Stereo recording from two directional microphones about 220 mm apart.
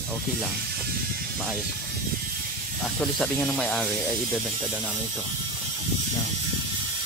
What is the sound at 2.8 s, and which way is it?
Speech, centre (ahead or behind).